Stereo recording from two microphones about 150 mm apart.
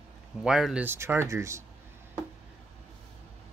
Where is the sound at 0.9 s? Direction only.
15° right (ahead or behind).